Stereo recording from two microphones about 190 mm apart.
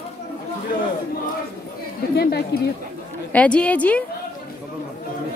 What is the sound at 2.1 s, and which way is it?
Speech, 55° left (ahead or behind).